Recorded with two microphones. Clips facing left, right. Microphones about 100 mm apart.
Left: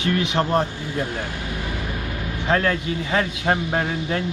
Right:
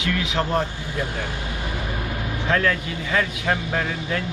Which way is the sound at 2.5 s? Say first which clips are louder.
Left 2 dB; 30° left (ahead or behind).